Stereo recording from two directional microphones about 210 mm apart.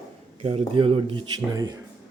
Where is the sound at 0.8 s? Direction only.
25° right (ahead or behind).